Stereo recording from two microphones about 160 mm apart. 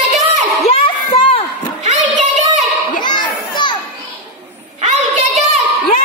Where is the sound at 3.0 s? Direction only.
25° left (ahead or behind).